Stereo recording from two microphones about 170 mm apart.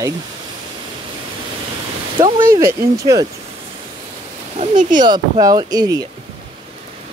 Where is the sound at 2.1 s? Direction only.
30° right (ahead or behind).